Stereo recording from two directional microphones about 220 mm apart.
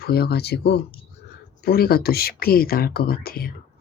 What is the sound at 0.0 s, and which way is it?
Speech, 45° left (ahead or behind).